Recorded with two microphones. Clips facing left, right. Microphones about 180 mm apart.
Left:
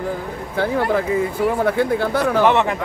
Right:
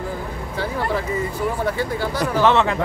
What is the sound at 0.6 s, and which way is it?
Speech, 55° left (ahead or behind).